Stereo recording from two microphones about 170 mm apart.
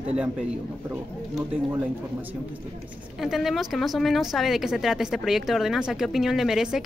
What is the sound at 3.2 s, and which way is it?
A woman's voice, centre (ahead or behind).